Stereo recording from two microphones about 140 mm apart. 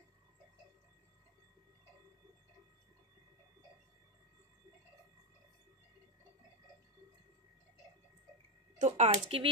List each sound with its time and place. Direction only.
8.7 s speech: 55° right (ahead or behind)